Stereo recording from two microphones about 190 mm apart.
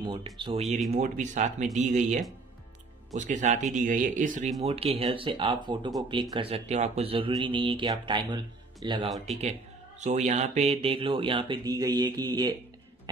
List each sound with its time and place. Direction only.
0.0 s speech: 25° right (ahead or behind)
0.6 s speech: centre (ahead or behind)
0.9 s speech: 40° right (ahead or behind)
4.6 s speech: 30° right (ahead or behind)
9.1 s speech: centre (ahead or behind)
9.4 s speech: 35° right (ahead or behind)